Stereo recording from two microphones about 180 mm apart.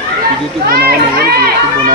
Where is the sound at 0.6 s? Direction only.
60° right (ahead or behind).